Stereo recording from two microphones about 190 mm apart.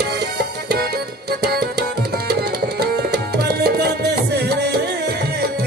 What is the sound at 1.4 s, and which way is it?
Tabla, 60° right (ahead or behind).